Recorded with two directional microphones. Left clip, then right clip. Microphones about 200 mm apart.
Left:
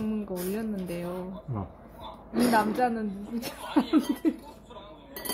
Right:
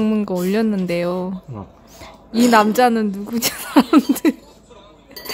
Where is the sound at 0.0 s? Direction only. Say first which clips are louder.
Right 13 dB; 55° right (ahead or behind).